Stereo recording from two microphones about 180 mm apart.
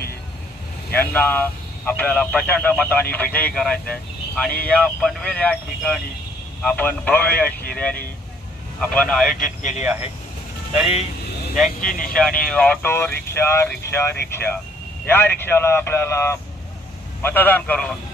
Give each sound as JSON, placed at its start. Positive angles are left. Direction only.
{"t": 0.9, "sound": "speech", "side_deg": 10}
{"t": 11.8, "sound": "speech", "side_deg": 50}
{"t": 12.1, "sound": "speech", "side_deg": 5}